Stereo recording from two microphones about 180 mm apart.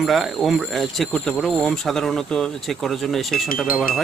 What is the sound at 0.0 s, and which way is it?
Speech, centre (ahead or behind).